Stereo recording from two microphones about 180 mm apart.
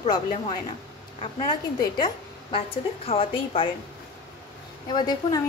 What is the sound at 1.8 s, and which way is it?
A woman's voice, 25° left (ahead or behind).